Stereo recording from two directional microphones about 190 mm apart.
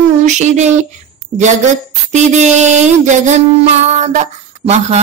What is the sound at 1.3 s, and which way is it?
Music, 35° right (ahead or behind).